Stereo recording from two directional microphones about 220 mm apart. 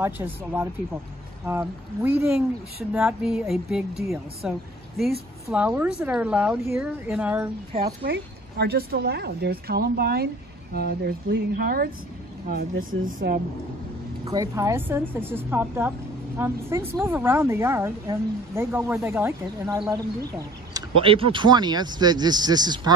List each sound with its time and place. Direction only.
0.0 s a woman's voice: 10° right (ahead or behind)
7.8 s speech: 45° right (ahead or behind)
13.0 s speech: 40° right (ahead or behind)
14.2 s a woman's voice: 15° right (ahead or behind)